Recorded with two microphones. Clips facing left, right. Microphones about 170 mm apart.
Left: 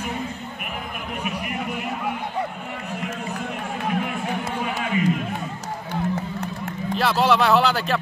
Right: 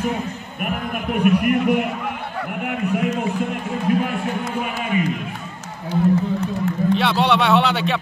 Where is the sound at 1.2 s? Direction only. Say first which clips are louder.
Right 15 dB; 60° right (ahead or behind).